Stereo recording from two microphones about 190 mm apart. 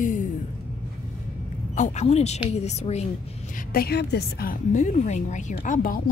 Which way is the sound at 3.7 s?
55° left (ahead or behind).